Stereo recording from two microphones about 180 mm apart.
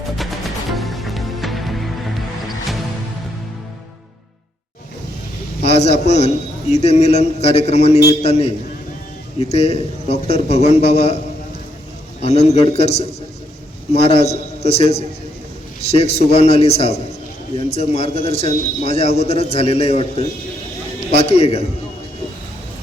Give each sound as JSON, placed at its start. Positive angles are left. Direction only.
{"t": 0.7, "sound": "music", "side_deg": 0}
{"t": 5.6, "sound": "a man's voice", "side_deg": 35}
{"t": 12.2, "sound": "a man's voice", "side_deg": 35}